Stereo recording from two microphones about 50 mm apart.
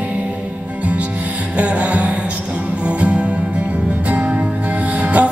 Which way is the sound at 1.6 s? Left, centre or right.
Right.